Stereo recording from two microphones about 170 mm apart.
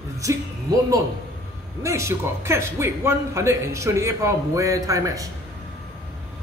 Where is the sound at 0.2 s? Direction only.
20° right (ahead or behind).